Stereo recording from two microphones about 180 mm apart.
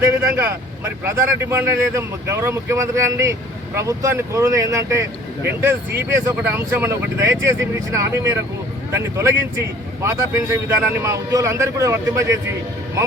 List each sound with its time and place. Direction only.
0.0 s speech: 15° right (ahead or behind)